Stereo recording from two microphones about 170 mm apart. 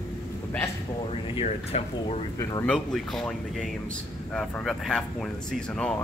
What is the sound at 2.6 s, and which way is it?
Speech, 5° left (ahead or behind).